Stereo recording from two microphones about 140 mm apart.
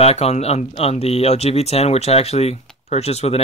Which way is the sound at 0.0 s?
50° left (ahead or behind).